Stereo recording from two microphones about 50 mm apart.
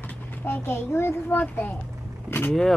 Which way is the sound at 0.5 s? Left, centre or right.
Left.